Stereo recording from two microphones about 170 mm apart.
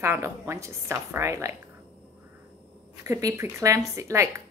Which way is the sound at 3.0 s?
15° right (ahead or behind).